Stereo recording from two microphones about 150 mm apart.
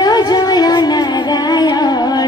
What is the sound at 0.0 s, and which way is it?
Music, 25° left (ahead or behind).